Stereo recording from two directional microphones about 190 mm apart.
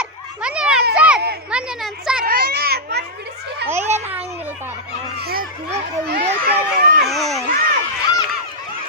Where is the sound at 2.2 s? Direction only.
55° right (ahead or behind).